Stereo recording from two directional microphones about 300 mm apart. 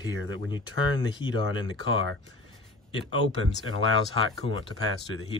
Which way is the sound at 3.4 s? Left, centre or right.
Right.